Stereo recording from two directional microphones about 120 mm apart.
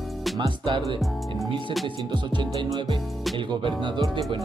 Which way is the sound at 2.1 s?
40° right (ahead or behind).